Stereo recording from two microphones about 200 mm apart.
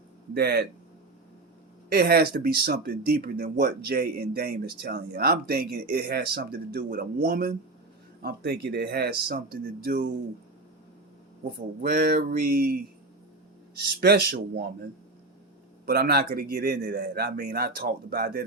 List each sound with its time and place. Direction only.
0.3 s speech: 50° right (ahead or behind)
1.9 s speech: 50° right (ahead or behind)
11.5 s speech: 45° right (ahead or behind)
14.0 s speech: 50° right (ahead or behind)
15.9 s speech: 50° right (ahead or behind)